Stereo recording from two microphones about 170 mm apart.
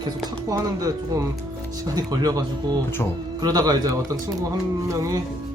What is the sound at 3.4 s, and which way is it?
Speech, 20° right (ahead or behind).